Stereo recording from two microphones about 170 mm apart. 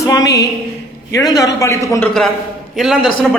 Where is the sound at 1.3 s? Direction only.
20° left (ahead or behind).